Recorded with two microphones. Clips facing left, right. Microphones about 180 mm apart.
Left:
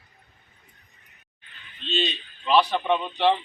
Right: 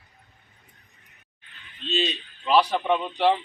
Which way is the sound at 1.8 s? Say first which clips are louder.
Right 2 dB; 40° right (ahead or behind).